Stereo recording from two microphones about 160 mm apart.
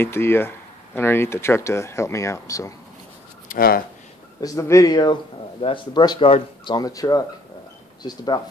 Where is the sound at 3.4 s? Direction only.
60° left (ahead or behind).